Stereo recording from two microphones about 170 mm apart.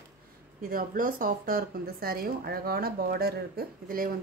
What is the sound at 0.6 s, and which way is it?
Speech, 55° right (ahead or behind).